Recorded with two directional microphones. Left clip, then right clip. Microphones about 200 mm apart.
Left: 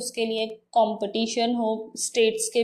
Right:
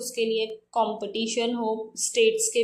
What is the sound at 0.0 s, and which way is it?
A woman's voice, 20° left (ahead or behind).